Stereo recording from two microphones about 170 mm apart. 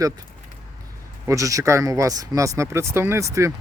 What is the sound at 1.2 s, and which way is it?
Speech, 20° right (ahead or behind).